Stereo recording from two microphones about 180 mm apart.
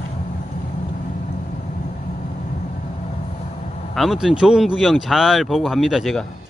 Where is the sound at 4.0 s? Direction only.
Centre (ahead or behind).